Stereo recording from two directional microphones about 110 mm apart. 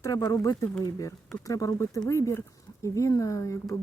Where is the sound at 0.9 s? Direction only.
30° left (ahead or behind).